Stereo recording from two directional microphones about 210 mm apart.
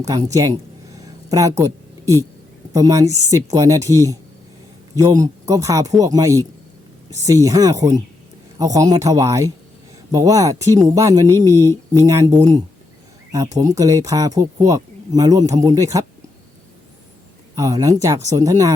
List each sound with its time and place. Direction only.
0.3 s speech: 15° right (ahead or behind)
0.9 s a sound: 15° right (ahead or behind)
2.7 s speech: 20° right (ahead or behind)
17.5 s speech: 15° right (ahead or behind)